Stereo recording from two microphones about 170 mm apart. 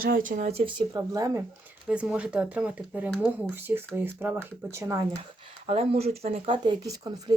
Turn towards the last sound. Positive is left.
turn(degrees=-20)  # may be behind; listen again after turning